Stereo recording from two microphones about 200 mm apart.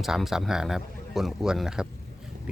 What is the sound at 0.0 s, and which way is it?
Speech, centre (ahead or behind).